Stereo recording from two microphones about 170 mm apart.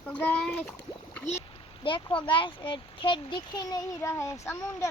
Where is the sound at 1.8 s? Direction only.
30° left (ahead or behind).